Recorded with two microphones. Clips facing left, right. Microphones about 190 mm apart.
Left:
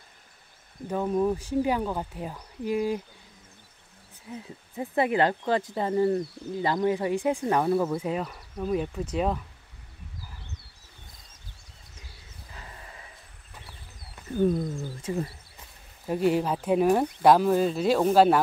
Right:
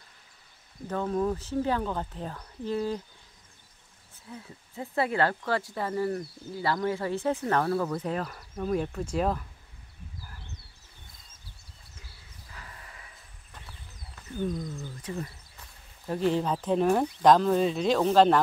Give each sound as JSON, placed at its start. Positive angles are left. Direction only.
{"t": 0.8, "sound": "speech", "side_deg": 15}
{"t": 4.3, "sound": "speech", "side_deg": 20}
{"t": 14.9, "sound": "speech", "side_deg": 30}
{"t": 16.1, "sound": "speech", "side_deg": 10}